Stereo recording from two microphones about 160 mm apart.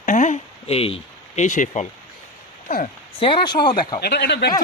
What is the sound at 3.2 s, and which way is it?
Speech, 30° left (ahead or behind).